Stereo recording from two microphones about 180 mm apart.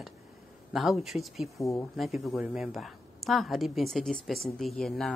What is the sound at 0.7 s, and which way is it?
Speech, centre (ahead or behind).